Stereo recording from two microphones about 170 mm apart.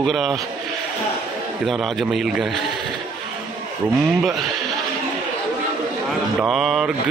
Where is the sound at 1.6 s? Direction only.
Centre (ahead or behind).